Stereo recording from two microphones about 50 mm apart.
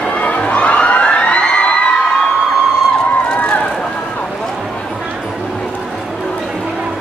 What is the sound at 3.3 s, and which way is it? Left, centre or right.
Run, left.